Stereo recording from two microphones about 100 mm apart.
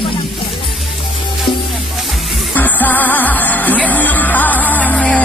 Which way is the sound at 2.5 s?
15° left (ahead or behind).